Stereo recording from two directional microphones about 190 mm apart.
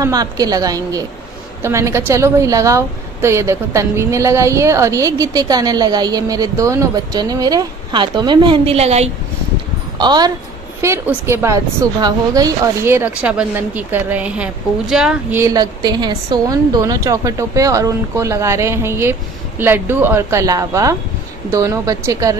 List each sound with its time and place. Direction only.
0.0 s a woman's voice: 20° right (ahead or behind)
9.9 s a woman's voice: 20° right (ahead or behind); by 15.4 s 5° right (ahead or behind)
15.4 s a woman's voice: 20° right (ahead or behind)